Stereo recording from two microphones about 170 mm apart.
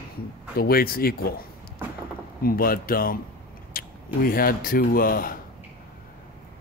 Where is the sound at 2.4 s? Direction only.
60° left (ahead or behind).